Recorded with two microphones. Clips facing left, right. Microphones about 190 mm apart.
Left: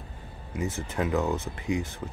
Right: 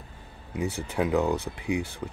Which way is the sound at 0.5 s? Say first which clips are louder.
Right 1 dB; 15° right (ahead or behind).